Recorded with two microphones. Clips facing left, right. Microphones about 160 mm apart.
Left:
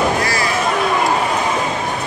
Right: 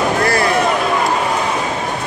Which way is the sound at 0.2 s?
55° right (ahead or behind).